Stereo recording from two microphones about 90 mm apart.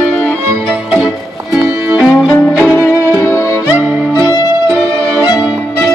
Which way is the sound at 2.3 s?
30° left (ahead or behind).